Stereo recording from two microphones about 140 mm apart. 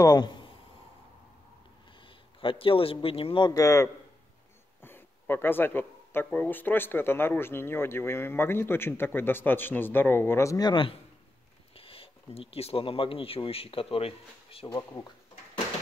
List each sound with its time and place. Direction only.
0.0 s a man's voice: 30° left (ahead or behind)
2.4 s a man's voice: 40° left (ahead or behind)
14.7 s speech: 20° left (ahead or behind)